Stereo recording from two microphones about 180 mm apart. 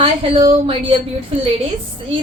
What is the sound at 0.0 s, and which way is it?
Speech, 30° right (ahead or behind).